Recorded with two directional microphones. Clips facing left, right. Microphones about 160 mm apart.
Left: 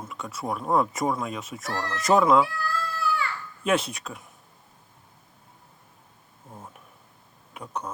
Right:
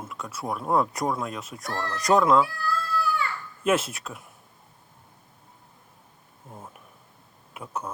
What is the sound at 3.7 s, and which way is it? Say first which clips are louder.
Speech: right 1 dB; centre (ahead or behind).